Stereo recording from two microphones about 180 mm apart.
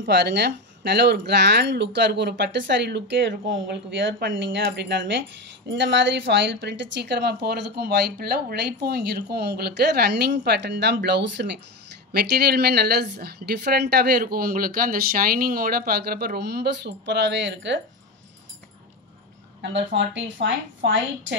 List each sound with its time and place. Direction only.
0.0 s a woman's voice: 70° right (ahead or behind)
5.7 s a woman's voice: 90° right; by 11.5 s 75° right (ahead or behind)
12.1 s a woman's voice: 60° right (ahead or behind); by 17.7 s 85° right
19.6 s a woman's voice: 85° right